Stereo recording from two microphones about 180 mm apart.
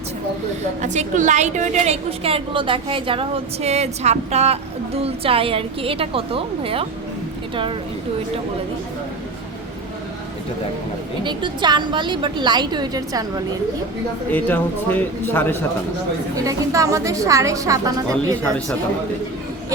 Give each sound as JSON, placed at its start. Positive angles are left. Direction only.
{"t": 0.8, "sound": "a woman's voice", "side_deg": -45}
{"t": 11.2, "sound": "a woman's voice", "side_deg": -25}
{"t": 14.3, "sound": "a man's voice", "side_deg": 10}
{"t": 16.3, "sound": "a woman's voice", "side_deg": -20}